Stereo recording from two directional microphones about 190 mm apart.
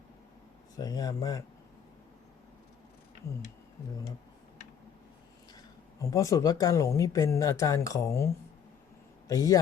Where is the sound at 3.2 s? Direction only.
15° left (ahead or behind).